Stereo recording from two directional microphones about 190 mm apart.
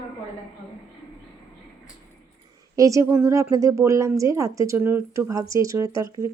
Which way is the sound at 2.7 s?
15° right (ahead or behind).